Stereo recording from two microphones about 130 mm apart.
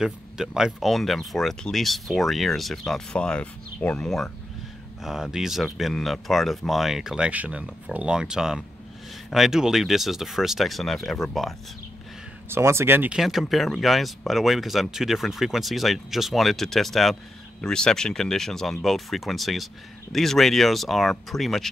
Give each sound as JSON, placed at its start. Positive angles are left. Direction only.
{"t": 0.0, "sound": "speech", "side_deg": -5}
{"t": 12.4, "sound": "speech", "side_deg": -20}
{"t": 13.1, "sound": "speech", "side_deg": 0}